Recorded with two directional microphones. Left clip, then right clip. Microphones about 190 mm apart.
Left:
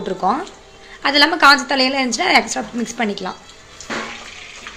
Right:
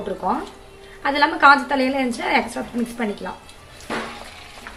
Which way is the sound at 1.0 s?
40° left (ahead or behind).